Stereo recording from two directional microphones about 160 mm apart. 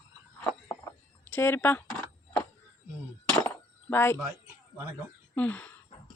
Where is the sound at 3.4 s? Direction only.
15° left (ahead or behind).